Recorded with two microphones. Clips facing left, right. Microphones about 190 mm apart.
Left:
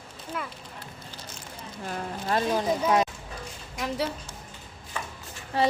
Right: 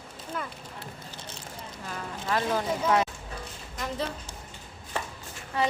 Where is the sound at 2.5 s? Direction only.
15° left (ahead or behind).